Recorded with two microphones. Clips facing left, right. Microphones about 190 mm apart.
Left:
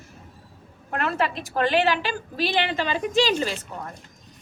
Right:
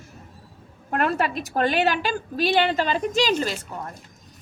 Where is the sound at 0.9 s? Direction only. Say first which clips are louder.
Right 2 dB; 45° right (ahead or behind).